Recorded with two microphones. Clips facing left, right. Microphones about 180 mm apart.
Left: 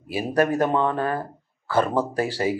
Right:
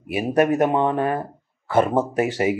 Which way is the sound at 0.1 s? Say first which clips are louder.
Right 3 dB; 20° right (ahead or behind).